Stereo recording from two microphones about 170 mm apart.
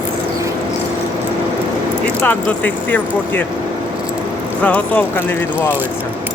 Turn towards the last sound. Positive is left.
turn(degrees=10)  # may be behind; listen again after turning